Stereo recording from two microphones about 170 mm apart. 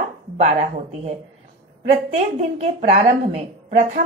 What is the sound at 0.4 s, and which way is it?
A woman's voice, 40° right (ahead or behind).